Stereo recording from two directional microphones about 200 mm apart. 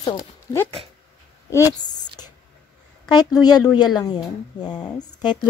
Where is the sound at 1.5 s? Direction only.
20° left (ahead or behind).